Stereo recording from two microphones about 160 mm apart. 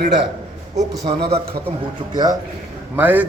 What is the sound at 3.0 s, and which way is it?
Speech, 10° right (ahead or behind).